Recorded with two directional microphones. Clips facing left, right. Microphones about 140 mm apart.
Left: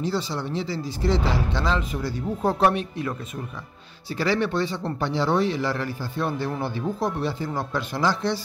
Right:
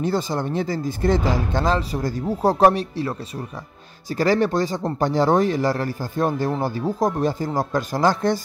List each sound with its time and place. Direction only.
0.0 s speech: 50° right (ahead or behind)